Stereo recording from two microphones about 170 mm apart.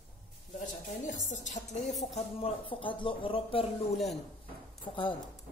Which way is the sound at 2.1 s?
35° left (ahead or behind).